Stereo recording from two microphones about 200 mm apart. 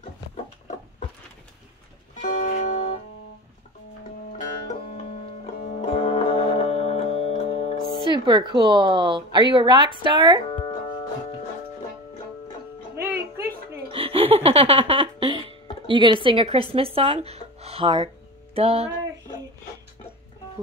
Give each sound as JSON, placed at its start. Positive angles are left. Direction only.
{"t": 2.3, "sound": "music", "side_deg": 40}
{"t": 5.6, "sound": "music", "side_deg": 35}
{"t": 8.1, "sound": "a woman's voice", "side_deg": -20}
{"t": 13.9, "sound": "music", "side_deg": -30}